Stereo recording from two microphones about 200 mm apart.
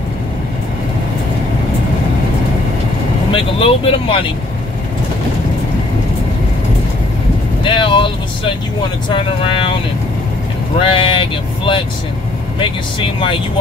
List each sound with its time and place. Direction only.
3.3 s speech: 25° left (ahead or behind)
7.6 s speech: 25° left (ahead or behind)
10.8 s speech: 25° left (ahead or behind)